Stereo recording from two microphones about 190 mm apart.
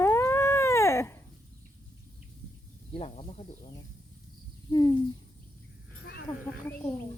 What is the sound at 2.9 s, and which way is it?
Speech, 30° left (ahead or behind).